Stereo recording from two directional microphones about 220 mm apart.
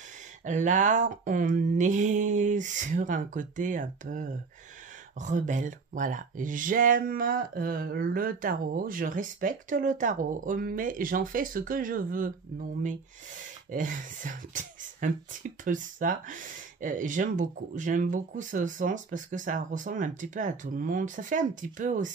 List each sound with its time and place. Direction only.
0.5 s speech: 35° right (ahead or behind)